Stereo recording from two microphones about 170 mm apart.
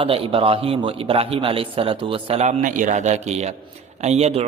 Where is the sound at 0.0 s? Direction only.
30° right (ahead or behind).